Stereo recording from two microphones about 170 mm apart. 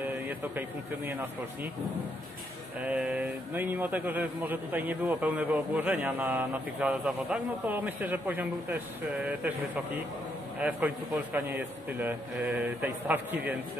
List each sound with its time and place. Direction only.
0.3 s a man's voice: 10° right (ahead or behind)
2.8 s a man's voice: 5° right (ahead or behind)
10.6 s a man's voice: 10° right (ahead or behind)